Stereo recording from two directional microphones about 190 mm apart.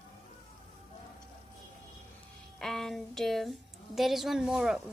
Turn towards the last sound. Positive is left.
turn(degrees=0)  # may be behind; listen again after turning